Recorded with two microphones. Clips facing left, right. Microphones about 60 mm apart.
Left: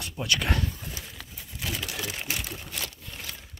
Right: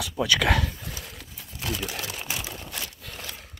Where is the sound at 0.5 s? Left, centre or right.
Right.